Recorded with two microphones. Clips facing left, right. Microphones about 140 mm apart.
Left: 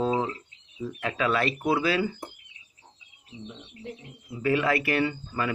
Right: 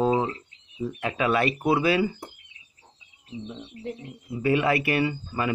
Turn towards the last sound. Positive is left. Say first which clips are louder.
# right 1 dB
turn(degrees=-10)  # may be behind; listen again after turning